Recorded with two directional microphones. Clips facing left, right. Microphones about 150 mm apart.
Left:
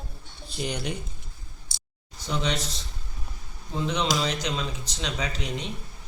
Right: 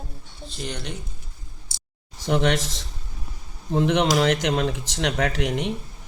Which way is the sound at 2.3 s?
85° right.